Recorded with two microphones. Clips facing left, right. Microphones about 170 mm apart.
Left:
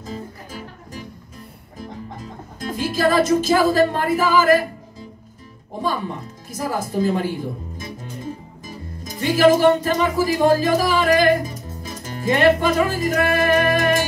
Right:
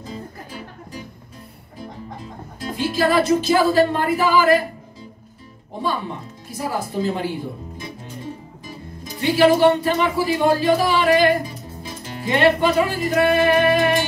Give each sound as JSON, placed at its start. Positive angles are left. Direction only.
{"t": 0.0, "sound": "music", "side_deg": 45}
{"t": 1.8, "sound": "speech", "side_deg": 45}
{"t": 6.5, "sound": "speech", "side_deg": 45}
{"t": 8.6, "sound": "speech", "side_deg": 45}
{"t": 13.3, "sound": "music", "side_deg": 45}